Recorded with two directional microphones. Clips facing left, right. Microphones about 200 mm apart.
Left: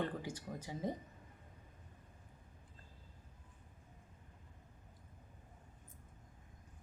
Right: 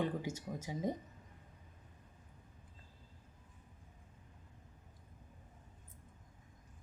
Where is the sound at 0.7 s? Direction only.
15° right (ahead or behind).